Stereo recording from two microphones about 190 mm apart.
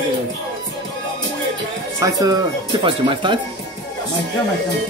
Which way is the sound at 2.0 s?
20° right (ahead or behind).